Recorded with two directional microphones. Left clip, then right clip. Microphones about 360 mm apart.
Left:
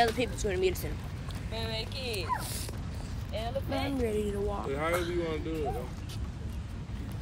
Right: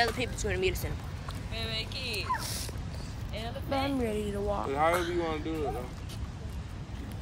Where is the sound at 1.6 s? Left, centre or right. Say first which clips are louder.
Right 1 dB; centre.